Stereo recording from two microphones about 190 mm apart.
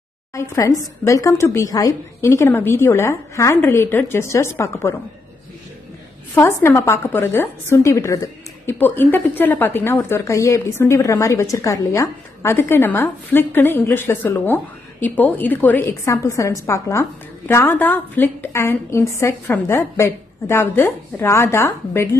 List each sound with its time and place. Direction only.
0.3 s a woman's voice: 15° left (ahead or behind)
6.3 s a woman's voice: 15° left (ahead or behind)